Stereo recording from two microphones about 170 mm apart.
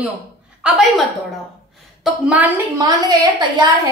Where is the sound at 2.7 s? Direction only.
25° right (ahead or behind).